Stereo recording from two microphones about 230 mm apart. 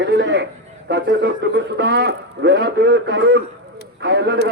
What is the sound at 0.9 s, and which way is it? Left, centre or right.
A man's voice, right.